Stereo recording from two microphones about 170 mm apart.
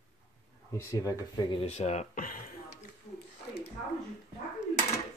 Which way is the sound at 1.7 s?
45° left (ahead or behind).